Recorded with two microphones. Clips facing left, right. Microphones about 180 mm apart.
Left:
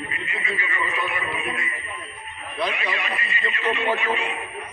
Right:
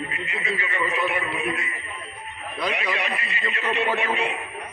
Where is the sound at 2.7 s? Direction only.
75° right (ahead or behind).